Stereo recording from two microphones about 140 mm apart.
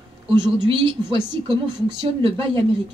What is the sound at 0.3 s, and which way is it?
Speech, 35° right (ahead or behind).